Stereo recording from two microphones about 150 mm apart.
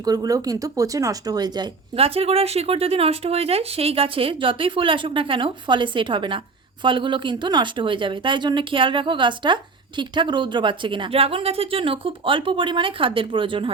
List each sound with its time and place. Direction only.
0.0 s speech: 25° right (ahead or behind)
2.0 s speech: 40° right (ahead or behind)